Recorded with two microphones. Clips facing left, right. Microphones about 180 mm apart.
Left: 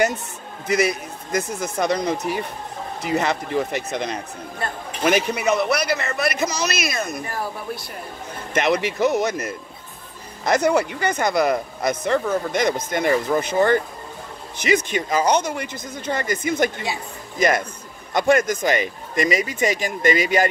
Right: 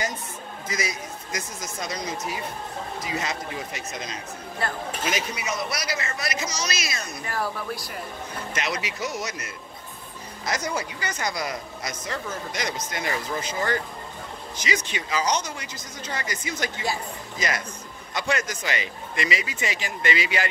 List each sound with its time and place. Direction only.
0.7 s speech: 60° left (ahead or behind)
7.3 s speech: 20° left (ahead or behind)
8.6 s speech: 55° left (ahead or behind)
10.4 s speech: 60° left (ahead or behind)